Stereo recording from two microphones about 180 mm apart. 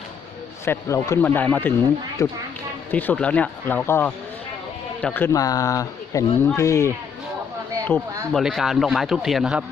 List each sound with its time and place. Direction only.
0.6 s speech: 15° left (ahead or behind)
2.2 s speech: 20° left (ahead or behind)
2.9 s speech: 10° left (ahead or behind)
8.3 s speech: centre (ahead or behind)